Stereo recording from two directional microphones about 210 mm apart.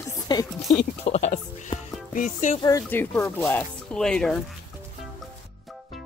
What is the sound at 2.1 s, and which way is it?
Music, 35° left (ahead or behind).